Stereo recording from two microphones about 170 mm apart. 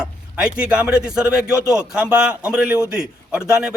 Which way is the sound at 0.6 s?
5° right (ahead or behind).